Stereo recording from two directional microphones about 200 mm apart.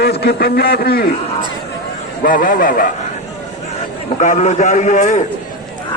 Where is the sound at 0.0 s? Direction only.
55° left (ahead or behind).